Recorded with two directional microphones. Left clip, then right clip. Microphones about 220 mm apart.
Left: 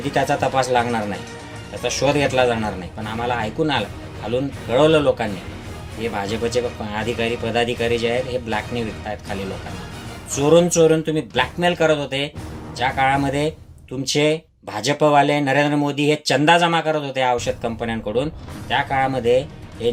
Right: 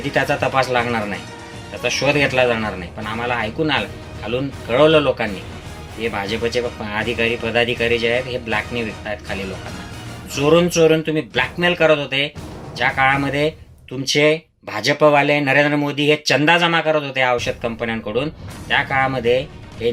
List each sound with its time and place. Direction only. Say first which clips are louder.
0.1 s speech: right 1 dB; 5° left (ahead or behind)